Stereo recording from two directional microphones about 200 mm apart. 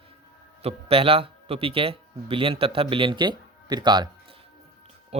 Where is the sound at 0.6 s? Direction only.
30° right (ahead or behind).